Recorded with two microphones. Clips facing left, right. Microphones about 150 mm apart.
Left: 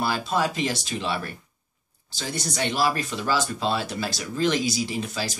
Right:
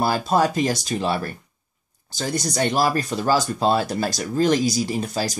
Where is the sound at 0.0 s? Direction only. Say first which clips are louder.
Right 5 dB; 40° right (ahead or behind).